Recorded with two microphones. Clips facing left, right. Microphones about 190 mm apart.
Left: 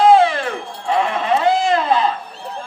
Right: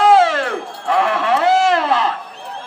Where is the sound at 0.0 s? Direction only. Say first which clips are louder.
Even; 90° right.